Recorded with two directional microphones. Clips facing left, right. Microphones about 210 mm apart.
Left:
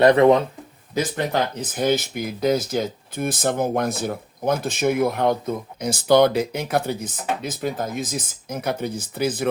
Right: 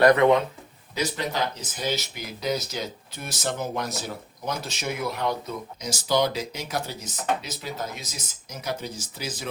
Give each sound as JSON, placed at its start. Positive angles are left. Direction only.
{"t": 0.0, "sound": "speech", "side_deg": 30}
{"t": 0.9, "sound": "speech", "side_deg": 50}